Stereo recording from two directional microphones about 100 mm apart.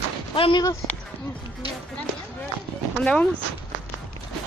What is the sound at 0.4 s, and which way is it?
Speech, 55° left (ahead or behind).